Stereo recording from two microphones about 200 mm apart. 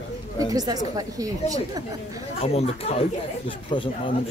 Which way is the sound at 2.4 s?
30° left (ahead or behind).